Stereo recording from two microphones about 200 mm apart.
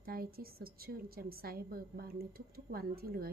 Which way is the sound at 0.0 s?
50° right (ahead or behind).